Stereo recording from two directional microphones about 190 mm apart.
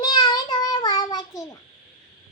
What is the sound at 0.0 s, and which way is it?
Child singing, 20° left (ahead or behind).